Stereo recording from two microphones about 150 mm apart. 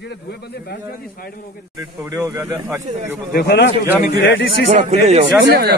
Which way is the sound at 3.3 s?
90° left.